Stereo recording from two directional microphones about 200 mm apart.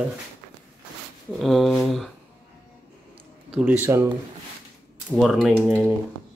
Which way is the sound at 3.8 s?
15° right (ahead or behind).